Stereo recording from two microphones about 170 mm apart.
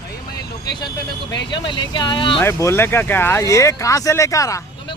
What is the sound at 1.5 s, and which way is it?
Speech, 25° left (ahead or behind).